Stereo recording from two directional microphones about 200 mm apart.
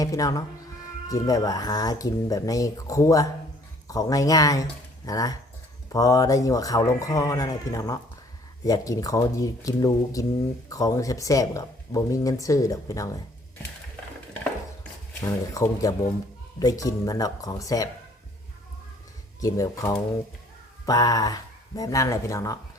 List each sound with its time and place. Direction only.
0.0 s speech: 15° left (ahead or behind)
15.2 s speech: 15° left (ahead or behind)
19.4 s speech: 15° left (ahead or behind)